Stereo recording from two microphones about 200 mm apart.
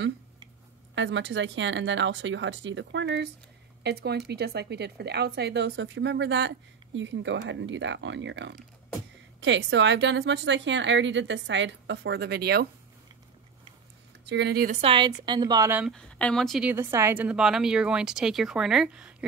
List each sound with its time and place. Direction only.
0.9 s a woman's voice: 65° right (ahead or behind)
14.2 s speech: 60° right (ahead or behind)
14.8 s a woman's voice: 25° right (ahead or behind)
15.8 s a woman's voice: 5° left (ahead or behind)